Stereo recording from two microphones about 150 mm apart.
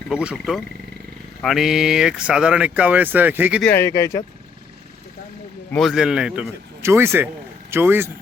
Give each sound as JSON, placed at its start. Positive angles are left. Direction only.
{"t": 0.1, "sound": "a man's voice", "side_deg": -5}
{"t": 3.6, "sound": "speech", "side_deg": 15}
{"t": 5.7, "sound": "a man's voice", "side_deg": 0}
{"t": 6.8, "sound": "speech", "side_deg": -15}